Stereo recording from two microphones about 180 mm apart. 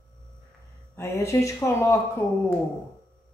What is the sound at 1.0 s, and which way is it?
Speech, 15° left (ahead or behind).